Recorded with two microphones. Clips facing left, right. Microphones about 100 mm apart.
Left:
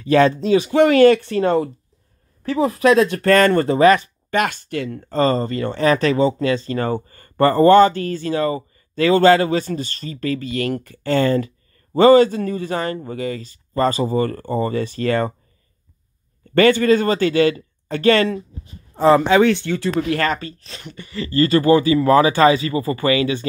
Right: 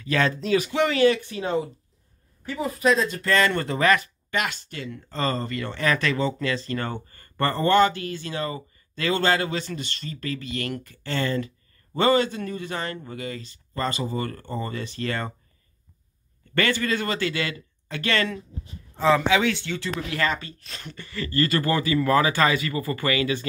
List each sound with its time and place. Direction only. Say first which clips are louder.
0.0 s speech: left 9 dB; 35° left (ahead or behind)
0.7 s speech: left 10 dB; 50° left (ahead or behind); by 1.7 s 75° left (ahead or behind)
2.4 s speech: left 7 dB; 90° left; by 15.3 s 45° left (ahead or behind)
16.5 s speech: left 11 dB; 40° left (ahead or behind)